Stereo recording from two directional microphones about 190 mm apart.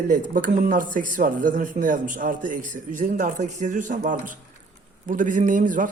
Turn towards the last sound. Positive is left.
turn(degrees=-45)  # may be behind; listen again after turning